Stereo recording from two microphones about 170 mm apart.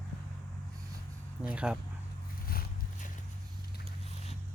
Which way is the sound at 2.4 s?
55° left (ahead or behind).